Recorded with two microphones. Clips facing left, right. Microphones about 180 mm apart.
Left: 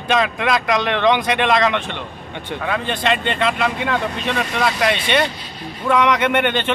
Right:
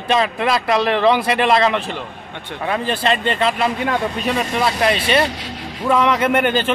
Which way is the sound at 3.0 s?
35° right (ahead or behind).